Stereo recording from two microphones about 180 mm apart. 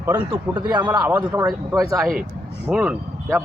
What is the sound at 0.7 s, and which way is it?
Speech, 25° right (ahead or behind).